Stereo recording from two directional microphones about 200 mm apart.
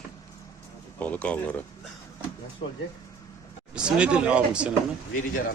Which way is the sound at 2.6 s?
25° left (ahead or behind).